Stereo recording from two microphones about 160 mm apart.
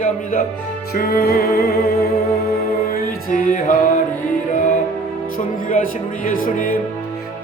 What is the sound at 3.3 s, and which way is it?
Music, 55° left (ahead or behind).